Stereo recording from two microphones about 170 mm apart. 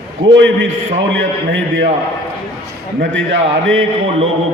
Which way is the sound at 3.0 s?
90° right.